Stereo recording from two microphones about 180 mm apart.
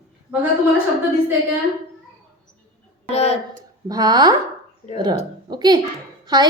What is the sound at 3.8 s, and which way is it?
Speech, 20° right (ahead or behind).